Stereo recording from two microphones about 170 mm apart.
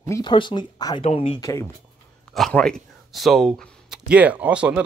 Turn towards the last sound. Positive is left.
turn(degrees=-5)  # may be behind; listen again after turning